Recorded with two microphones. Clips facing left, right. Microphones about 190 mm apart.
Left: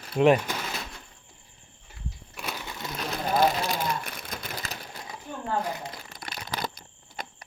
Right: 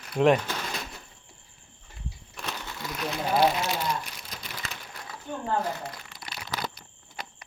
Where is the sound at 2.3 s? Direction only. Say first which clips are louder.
Left 1 dB; 10° left (ahead or behind).